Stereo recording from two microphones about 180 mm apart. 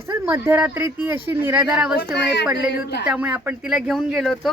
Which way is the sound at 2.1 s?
70° left (ahead or behind).